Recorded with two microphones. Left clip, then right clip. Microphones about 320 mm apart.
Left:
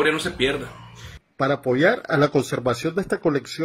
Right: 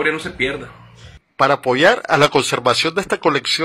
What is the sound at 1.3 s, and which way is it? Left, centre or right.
Speech, right.